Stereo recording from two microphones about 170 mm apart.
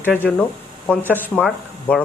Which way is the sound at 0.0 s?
10° left (ahead or behind).